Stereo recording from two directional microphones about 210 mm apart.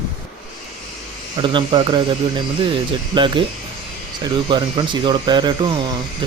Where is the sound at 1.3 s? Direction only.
20° right (ahead or behind).